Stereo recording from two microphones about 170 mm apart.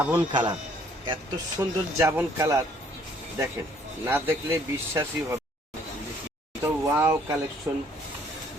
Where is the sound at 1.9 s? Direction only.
15° right (ahead or behind).